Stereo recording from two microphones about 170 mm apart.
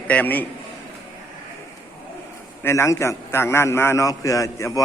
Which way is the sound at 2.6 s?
15° left (ahead or behind).